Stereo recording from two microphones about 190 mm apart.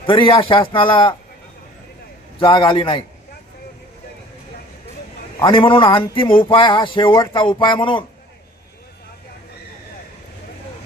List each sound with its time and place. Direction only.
0.0 s speech: 25° left (ahead or behind)
2.4 s speech: 25° left (ahead or behind)
5.4 s speech: 25° left (ahead or behind)